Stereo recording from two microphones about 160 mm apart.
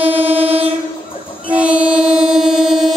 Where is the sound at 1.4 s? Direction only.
10° right (ahead or behind).